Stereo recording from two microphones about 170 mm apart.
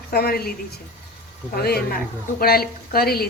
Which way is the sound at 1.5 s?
70° left (ahead or behind).